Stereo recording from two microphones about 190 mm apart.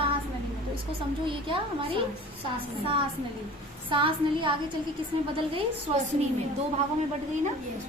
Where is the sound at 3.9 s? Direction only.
25° right (ahead or behind).